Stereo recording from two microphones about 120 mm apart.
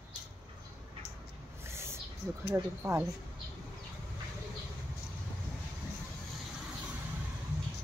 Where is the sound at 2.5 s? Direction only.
20° right (ahead or behind).